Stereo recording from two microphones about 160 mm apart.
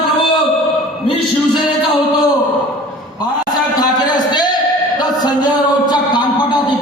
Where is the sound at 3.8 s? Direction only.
25° left (ahead or behind).